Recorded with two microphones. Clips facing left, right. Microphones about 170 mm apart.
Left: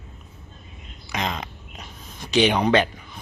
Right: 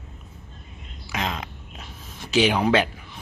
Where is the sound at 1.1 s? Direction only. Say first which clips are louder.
Left 1 dB; 5° right (ahead or behind).